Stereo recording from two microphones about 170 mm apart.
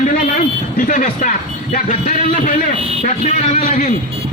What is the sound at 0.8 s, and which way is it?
A man's voice, 50° left (ahead or behind).